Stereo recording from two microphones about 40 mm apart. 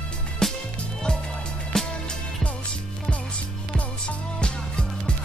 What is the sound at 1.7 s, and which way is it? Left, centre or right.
Music, centre.